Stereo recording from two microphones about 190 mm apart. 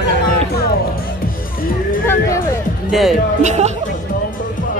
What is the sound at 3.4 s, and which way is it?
Speech, 35° right (ahead or behind).